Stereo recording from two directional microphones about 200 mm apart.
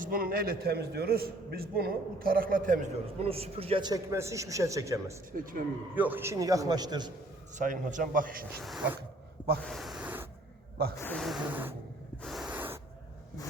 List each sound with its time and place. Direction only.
0.0 s a man's voice: 45° right (ahead or behind)
3.2 s a man's voice: 30° right (ahead or behind)
5.3 s a man's voice: 45° right (ahead or behind)
6.0 s a man's voice: 10° right (ahead or behind)
7.5 s a man's voice: 40° right (ahead or behind)
8.6 s speech: 5° right (ahead or behind)
9.6 s a sound: centre (ahead or behind)
11.0 s speech: centre (ahead or behind)
12.2 s snort: centre (ahead or behind)
12.5 s a sound: 10° right (ahead or behind)